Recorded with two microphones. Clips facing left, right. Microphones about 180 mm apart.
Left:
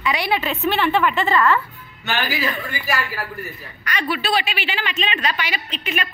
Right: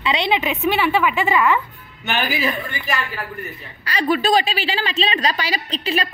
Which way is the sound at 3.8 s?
35° right (ahead or behind).